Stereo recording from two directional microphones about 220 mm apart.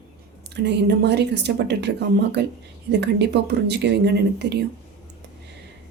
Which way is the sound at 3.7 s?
50° right (ahead or behind).